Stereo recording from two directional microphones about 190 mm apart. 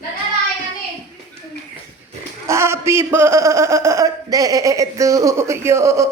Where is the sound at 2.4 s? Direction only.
15° right (ahead or behind).